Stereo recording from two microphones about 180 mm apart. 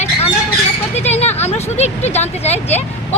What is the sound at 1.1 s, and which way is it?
Vehicle, 35° left (ahead or behind).